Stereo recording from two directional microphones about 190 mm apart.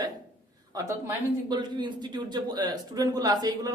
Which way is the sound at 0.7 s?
15° right (ahead or behind).